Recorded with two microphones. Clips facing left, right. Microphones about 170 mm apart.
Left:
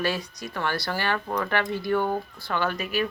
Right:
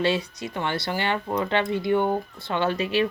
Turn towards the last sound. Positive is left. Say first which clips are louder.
# right 4 dB
turn(degrees=-30)  # may be behind; listen again after turning